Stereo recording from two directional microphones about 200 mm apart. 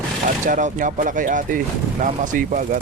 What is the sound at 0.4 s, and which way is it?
Speech, 40° right (ahead or behind).